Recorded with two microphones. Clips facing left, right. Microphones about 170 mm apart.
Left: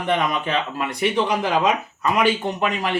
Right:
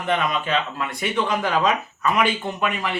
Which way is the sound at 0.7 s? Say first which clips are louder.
Left 2 dB; 35° left (ahead or behind).